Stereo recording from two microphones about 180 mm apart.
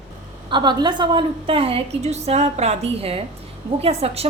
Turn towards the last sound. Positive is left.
turn(degrees=-35)  # may be behind; listen again after turning